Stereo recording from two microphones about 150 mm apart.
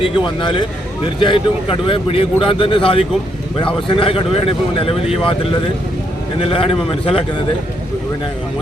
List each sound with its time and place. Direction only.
0.0 s speech: 35° left (ahead or behind)